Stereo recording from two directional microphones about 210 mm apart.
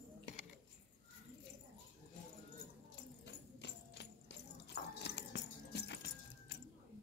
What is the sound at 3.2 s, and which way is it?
Music, 55° left (ahead or behind).